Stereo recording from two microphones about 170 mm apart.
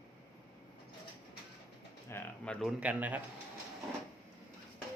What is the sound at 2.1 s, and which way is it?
Speech, 10° left (ahead or behind).